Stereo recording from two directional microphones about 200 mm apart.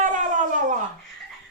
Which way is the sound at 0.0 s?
40° right (ahead or behind).